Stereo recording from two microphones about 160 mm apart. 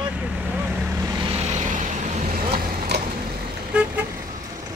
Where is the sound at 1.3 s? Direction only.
45° right (ahead or behind).